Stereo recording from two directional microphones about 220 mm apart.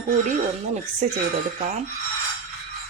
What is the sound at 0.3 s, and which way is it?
Speech, 35° right (ahead or behind).